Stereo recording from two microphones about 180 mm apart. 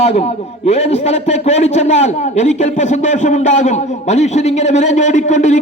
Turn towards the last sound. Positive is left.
turn(degrees=40)  # may be behind; listen again after turning